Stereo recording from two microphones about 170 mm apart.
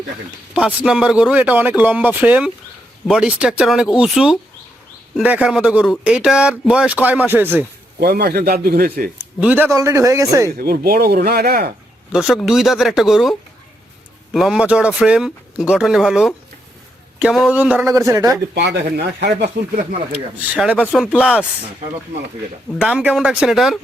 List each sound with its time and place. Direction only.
0.5 s speech: 5° right (ahead or behind)
7.9 s a man's voice: 65° right (ahead or behind)
9.4 s speech: 10° right (ahead or behind)
10.6 s speech: 65° right (ahead or behind)
12.1 s speech: centre (ahead or behind)
14.3 s speech: centre (ahead or behind); by 18.3 s 20° right (ahead or behind)
18.5 s speech: 90° right
20.6 s speech: 5° right (ahead or behind)
22.8 s speech: 5° right (ahead or behind)